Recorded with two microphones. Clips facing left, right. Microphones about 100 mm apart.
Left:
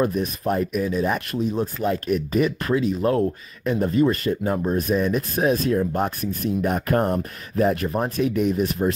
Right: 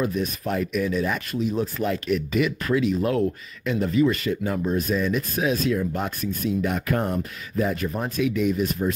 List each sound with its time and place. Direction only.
0.0 s speech: 50° left (ahead or behind)
0.4 s speech: 35° left (ahead or behind)